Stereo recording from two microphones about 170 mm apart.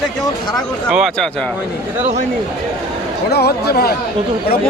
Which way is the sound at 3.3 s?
70° left (ahead or behind).